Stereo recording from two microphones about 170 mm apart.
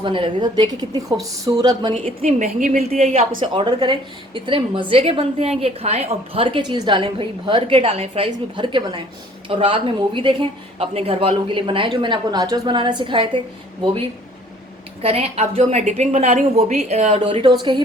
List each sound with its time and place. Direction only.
0.0 s a woman's voice: 30° right (ahead or behind)
2.2 s a woman's voice: 45° right (ahead or behind); by 13.4 s 30° right (ahead or behind)
15.0 s a woman's voice: 35° right (ahead or behind)